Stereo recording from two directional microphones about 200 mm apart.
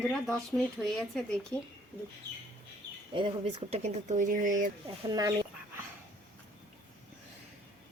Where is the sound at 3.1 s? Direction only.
25° right (ahead or behind); by 4.7 s 40° right (ahead or behind).